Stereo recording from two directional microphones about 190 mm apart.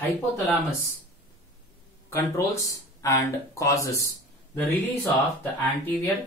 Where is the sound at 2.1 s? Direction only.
15° left (ahead or behind).